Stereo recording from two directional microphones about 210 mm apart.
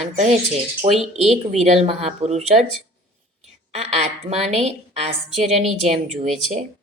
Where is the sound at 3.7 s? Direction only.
30° right (ahead or behind).